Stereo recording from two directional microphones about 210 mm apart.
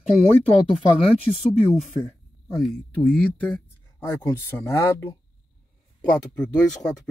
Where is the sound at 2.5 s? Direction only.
Centre (ahead or behind).